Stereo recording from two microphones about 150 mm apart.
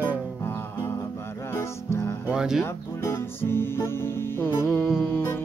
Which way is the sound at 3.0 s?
15° left (ahead or behind).